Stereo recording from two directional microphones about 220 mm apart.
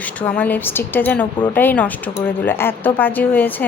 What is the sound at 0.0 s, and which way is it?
Speech, 5° left (ahead or behind).